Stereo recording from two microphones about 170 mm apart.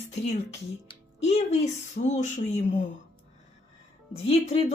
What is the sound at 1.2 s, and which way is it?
Speech, 40° left (ahead or behind).